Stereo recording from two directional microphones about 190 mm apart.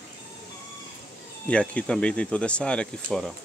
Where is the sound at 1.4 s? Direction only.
5° left (ahead or behind).